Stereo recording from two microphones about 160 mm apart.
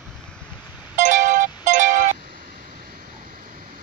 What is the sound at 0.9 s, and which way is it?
Music, 55° right (ahead or behind).